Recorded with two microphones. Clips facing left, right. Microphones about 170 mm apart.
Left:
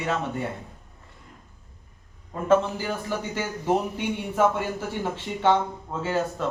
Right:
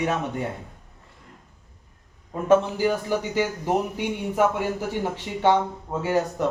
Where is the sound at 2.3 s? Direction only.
10° right (ahead or behind).